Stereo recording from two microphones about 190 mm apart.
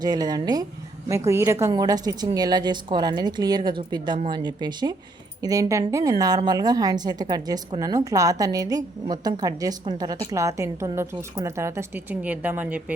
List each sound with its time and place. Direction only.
0.0 s speech: 20° right (ahead or behind)